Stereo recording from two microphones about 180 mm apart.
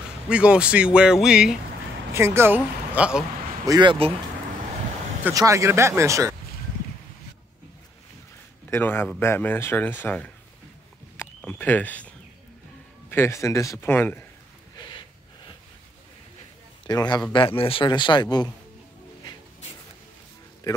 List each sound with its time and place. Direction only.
0.3 s speech: 5° right (ahead or behind)
2.1 s speech: 15° right (ahead or behind)
3.6 s speech: 25° right (ahead or behind)
5.2 s speech: 15° right (ahead or behind)
8.6 s speech: 15° left (ahead or behind)
11.4 s speech: 10° left (ahead or behind)
13.1 s speech: 15° left (ahead or behind)
14.8 s snort: 25° left (ahead or behind)
16.8 s a man's voice: 25° left (ahead or behind)